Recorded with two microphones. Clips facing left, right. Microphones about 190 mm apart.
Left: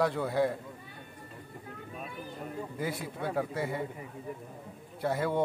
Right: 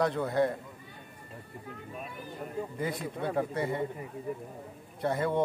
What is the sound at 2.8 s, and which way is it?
Speech, 5° left (ahead or behind).